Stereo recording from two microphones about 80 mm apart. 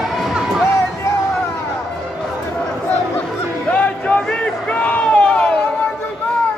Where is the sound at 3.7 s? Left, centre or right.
Centre.